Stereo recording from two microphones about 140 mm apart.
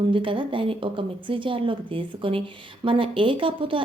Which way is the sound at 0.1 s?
35° right (ahead or behind).